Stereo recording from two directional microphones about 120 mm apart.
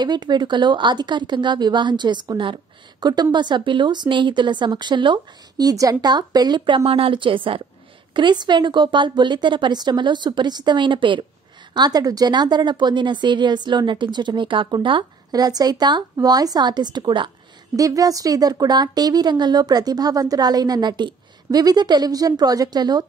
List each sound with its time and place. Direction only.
0.0 s speech: 35° right (ahead or behind)
6.8 s a woman's voice: 50° right (ahead or behind)
17.7 s speech: 30° right (ahead or behind)